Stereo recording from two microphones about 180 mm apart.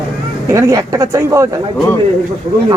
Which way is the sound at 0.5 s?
20° right (ahead or behind).